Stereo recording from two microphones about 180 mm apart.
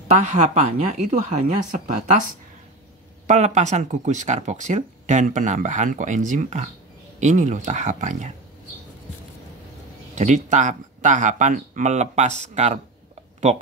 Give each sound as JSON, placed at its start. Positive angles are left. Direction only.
{"t": 0.2, "sound": "speech", "side_deg": -40}
{"t": 3.3, "sound": "speech", "side_deg": -40}
{"t": 10.1, "sound": "speech", "side_deg": -40}